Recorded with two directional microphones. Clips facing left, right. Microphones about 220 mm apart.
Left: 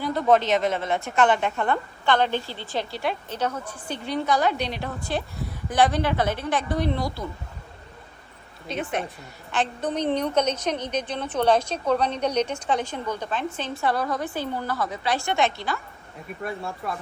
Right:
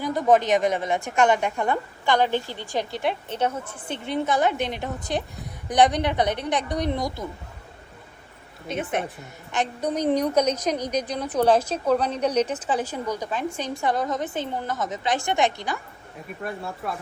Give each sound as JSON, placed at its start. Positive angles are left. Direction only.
{"t": 0.0, "sound": "a woman's voice", "side_deg": -15}
{"t": 8.6, "sound": "a woman's voice", "side_deg": -20}
{"t": 16.4, "sound": "speech", "side_deg": 0}